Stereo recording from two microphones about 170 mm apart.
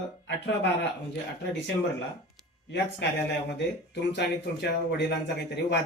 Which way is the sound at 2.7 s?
90° left.